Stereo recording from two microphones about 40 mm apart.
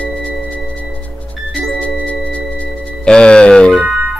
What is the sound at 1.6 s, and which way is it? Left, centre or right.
Music, left.